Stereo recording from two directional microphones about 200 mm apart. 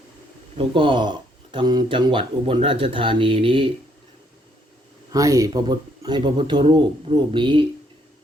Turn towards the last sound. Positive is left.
turn(degrees=-25)  # may be behind; listen again after turning